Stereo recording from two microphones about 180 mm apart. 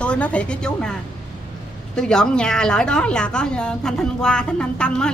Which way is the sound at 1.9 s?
5° left (ahead or behind).